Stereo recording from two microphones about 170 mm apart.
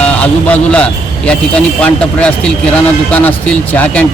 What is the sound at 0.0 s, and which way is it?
A man's voice, 10° left (ahead or behind).